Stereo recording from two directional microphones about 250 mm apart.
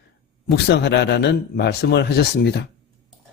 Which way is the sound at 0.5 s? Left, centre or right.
Left.